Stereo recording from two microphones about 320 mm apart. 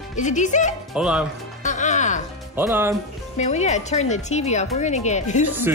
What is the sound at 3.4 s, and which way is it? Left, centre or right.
Speech, left.